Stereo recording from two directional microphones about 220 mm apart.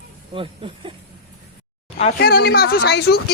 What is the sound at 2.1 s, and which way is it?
Speech, 45° left (ahead or behind).